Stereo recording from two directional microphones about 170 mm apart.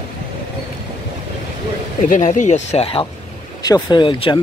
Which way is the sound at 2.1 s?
45° left (ahead or behind).